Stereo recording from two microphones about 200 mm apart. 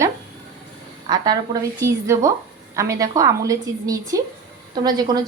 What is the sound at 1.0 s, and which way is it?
A woman's voice, 20° right (ahead or behind).